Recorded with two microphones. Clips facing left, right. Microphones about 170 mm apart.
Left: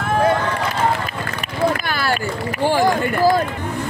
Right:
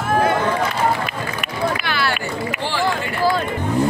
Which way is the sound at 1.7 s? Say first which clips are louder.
Left 1 dB; 45° left (ahead or behind).